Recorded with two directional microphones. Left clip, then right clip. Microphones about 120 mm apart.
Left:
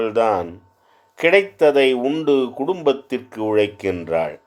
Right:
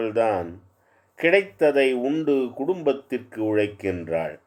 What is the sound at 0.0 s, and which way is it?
Speech, 30° left (ahead or behind).